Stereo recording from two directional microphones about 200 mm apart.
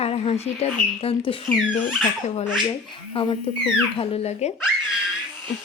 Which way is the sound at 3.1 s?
25° left (ahead or behind).